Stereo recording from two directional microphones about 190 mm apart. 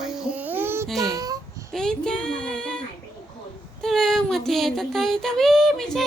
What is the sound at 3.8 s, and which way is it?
Child singing, centre (ahead or behind).